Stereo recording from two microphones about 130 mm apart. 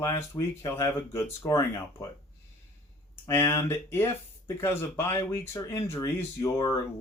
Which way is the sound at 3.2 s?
20° left (ahead or behind).